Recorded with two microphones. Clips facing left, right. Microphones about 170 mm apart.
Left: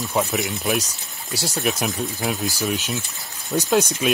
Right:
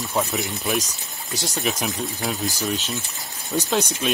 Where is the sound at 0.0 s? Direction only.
Centre (ahead or behind).